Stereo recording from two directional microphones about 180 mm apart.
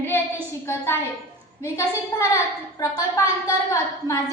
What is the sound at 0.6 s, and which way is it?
A woman's voice, 15° left (ahead or behind).